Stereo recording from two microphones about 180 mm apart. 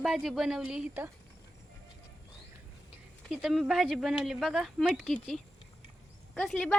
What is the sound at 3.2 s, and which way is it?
Speech, centre (ahead or behind).